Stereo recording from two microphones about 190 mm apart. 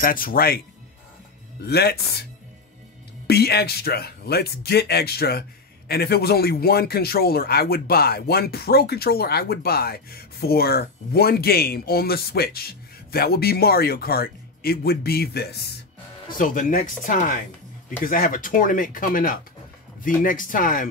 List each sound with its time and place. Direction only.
0.0 s speech: 50° left (ahead or behind)
1.6 s a man's voice: 55° left (ahead or behind)
3.3 s a man's voice: 55° left (ahead or behind)
16.3 s speech: 45° left (ahead or behind)